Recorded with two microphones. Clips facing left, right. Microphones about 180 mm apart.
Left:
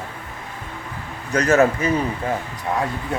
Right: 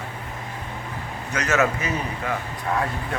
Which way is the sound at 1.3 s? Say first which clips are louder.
Left 6 dB; 35° left (ahead or behind).